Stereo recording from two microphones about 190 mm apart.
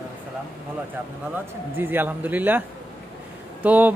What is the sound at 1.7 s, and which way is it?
Speech, 10° right (ahead or behind).